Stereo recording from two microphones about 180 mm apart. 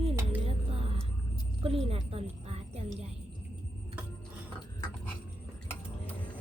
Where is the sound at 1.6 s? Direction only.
30° right (ahead or behind).